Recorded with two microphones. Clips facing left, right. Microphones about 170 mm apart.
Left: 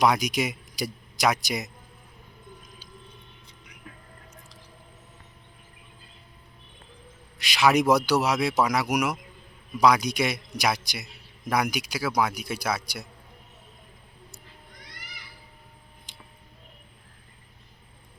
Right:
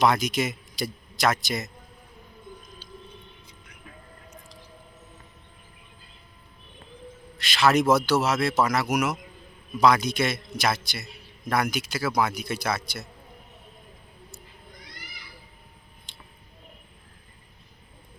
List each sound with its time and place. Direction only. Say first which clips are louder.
0.0 s speech: even; 10° left (ahead or behind)
7.4 s a man's voice: even; 15° left (ahead or behind)